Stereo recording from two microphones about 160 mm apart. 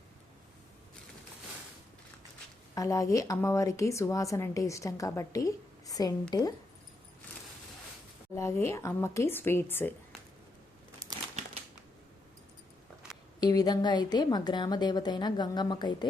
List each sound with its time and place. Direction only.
2.7 s a woman's voice: 20° left (ahead or behind)
8.4 s speech: 15° left (ahead or behind)
13.4 s a woman's voice: 25° left (ahead or behind)